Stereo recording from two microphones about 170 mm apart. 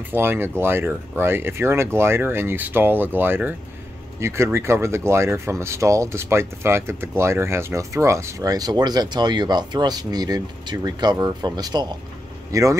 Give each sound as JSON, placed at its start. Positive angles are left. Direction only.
{"t": 0.1, "sound": "speech", "side_deg": -10}